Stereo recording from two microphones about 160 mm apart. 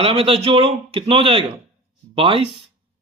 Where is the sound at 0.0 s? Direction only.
35° right (ahead or behind).